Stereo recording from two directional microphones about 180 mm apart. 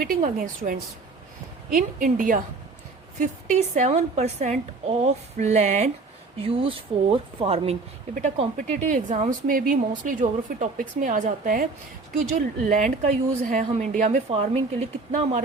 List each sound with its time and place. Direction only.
0.0 s a woman's voice: 50° right (ahead or behind)
12.6 s speech: 45° right (ahead or behind)